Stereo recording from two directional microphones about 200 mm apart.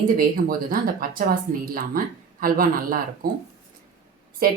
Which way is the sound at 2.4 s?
45° right (ahead or behind).